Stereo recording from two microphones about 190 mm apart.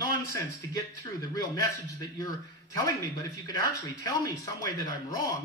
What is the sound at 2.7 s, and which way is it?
Speech, 20° left (ahead or behind).